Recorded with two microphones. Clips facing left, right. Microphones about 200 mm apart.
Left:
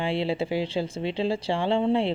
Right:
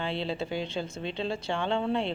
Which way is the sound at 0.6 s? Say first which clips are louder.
Left 6 dB; 30° left (ahead or behind).